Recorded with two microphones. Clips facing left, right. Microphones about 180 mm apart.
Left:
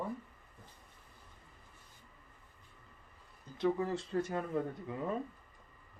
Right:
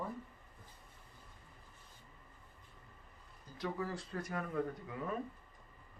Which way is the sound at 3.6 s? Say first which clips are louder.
Left 7 dB; 25° left (ahead or behind).